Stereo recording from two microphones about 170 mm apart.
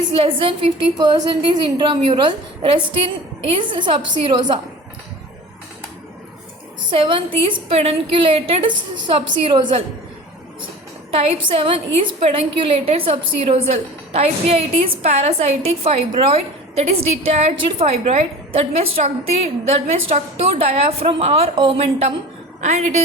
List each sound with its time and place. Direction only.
0.1 s a woman's voice: 30° right (ahead or behind)
3.6 s a woman's voice: 30° right (ahead or behind)
6.9 s a woman's voice: 30° right (ahead or behind)
11.1 s a woman's voice: 35° right (ahead or behind)